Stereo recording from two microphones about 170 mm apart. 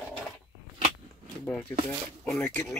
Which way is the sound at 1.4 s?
5° left (ahead or behind).